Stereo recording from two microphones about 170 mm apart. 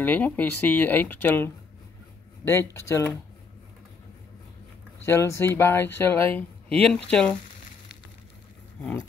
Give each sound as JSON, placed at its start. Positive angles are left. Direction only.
{"t": 0.0, "sound": "speech", "side_deg": 10}
{"t": 5.0, "sound": "speech", "side_deg": 15}